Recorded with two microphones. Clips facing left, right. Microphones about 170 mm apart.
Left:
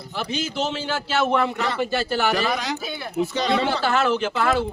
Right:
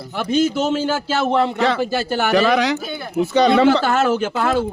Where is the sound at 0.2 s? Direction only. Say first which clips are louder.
Right 8 dB; 50° right (ahead or behind).